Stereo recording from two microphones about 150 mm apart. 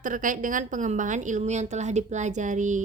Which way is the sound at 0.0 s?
60° right (ahead or behind).